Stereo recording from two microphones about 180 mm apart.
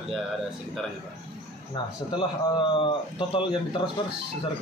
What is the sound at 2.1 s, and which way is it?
A man's voice, 25° left (ahead or behind).